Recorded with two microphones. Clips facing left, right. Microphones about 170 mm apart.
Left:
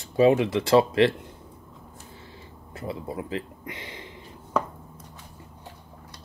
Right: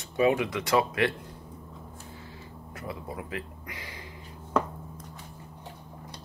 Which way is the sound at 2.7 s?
25° left (ahead or behind).